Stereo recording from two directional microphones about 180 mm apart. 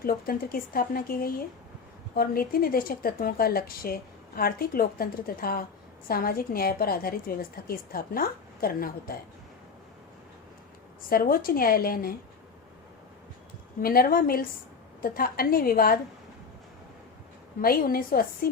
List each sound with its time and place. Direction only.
0.0 s a woman's voice: 55° left (ahead or behind)
11.1 s a woman's voice: 55° left (ahead or behind)
13.8 s a woman's voice: 55° left (ahead or behind)
17.6 s a woman's voice: 55° left (ahead or behind)